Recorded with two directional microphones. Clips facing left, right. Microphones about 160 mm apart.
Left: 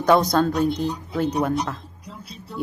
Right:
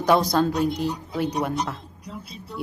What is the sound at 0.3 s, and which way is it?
A woman's voice, 10° right (ahead or behind).